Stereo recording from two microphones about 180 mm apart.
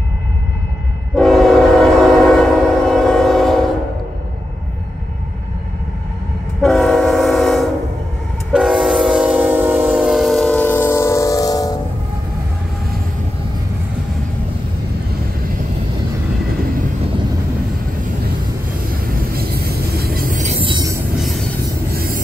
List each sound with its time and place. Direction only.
1.1 s train: centre (ahead or behind)
6.6 s train: centre (ahead or behind); by 11.7 s 20° left (ahead or behind)
19.0 s vehicle: 55° right (ahead or behind); by 20.6 s 40° right (ahead or behind)
20.6 s train: 20° right (ahead or behind)
21.2 s train: centre (ahead or behind)
21.9 s vehicle: 55° right (ahead or behind)